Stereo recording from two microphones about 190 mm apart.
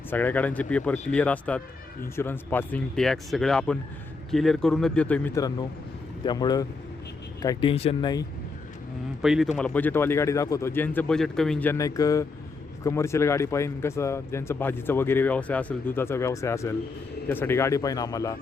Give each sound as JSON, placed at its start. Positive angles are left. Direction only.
{"t": 0.1, "sound": "speech", "side_deg": 10}
{"t": 9.2, "sound": "speech", "side_deg": 0}